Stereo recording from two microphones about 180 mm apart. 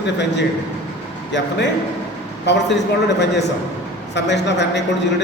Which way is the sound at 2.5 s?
75° left (ahead or behind).